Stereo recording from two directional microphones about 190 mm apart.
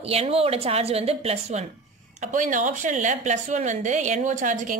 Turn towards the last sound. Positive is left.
turn(degrees=-40)  # may be behind; listen again after turning